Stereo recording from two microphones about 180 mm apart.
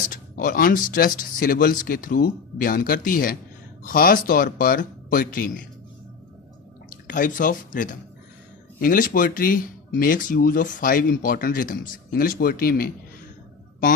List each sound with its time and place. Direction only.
0.1 s speech: 50° left (ahead or behind)
6.9 s speech: 50° left (ahead or behind)